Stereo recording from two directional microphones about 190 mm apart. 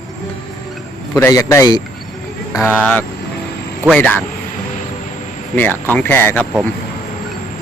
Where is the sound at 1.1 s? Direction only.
15° left (ahead or behind).